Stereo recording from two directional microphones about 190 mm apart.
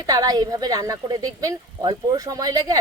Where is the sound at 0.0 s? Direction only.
20° right (ahead or behind).